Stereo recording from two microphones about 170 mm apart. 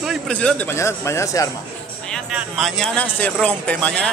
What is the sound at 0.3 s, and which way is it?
Speech, 5° left (ahead or behind).